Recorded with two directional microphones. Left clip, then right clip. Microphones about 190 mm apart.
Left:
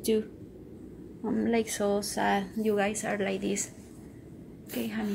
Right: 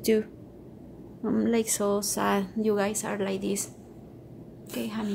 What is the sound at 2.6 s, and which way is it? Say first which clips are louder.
A woman's voice: right 1 dB; 20° right (ahead or behind).